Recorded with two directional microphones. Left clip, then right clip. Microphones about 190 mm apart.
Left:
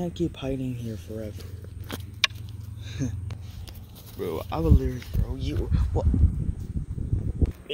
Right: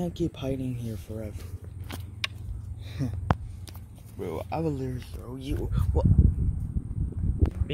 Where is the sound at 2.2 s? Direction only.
45° left (ahead or behind).